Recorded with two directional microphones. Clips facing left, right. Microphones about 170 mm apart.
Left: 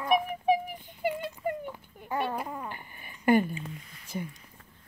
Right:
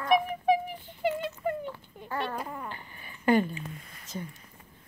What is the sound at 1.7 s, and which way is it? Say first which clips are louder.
Cat: left 1 dB; 15° left (ahead or behind).